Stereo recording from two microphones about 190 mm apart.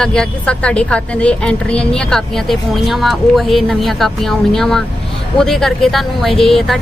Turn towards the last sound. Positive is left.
turn(degrees=0)  # may be behind; listen again after turning